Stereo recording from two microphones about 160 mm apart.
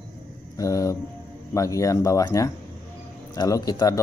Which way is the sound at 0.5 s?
20° left (ahead or behind).